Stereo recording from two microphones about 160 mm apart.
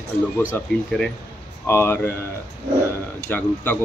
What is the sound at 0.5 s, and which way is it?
Speech, 15° left (ahead or behind).